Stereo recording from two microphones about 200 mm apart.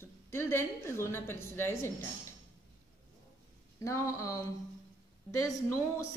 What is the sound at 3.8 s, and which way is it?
Speech, 15° left (ahead or behind).